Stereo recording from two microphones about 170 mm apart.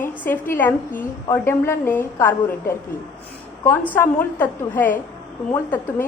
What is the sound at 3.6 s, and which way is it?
A woman's voice, 10° left (ahead or behind).